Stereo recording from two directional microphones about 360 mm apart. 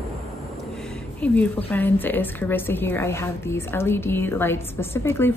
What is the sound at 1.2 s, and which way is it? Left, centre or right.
A woman's voice, centre.